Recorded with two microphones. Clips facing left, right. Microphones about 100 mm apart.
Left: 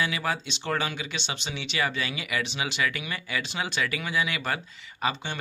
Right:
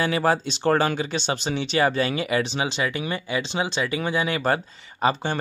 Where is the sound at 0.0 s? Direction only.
40° right (ahead or behind).